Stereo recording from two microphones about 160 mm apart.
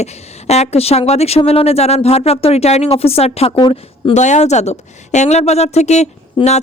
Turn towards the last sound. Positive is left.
turn(degrees=45)  # may be behind; listen again after turning